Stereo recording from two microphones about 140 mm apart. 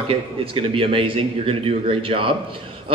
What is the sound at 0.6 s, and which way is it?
A man's voice, 40° right (ahead or behind).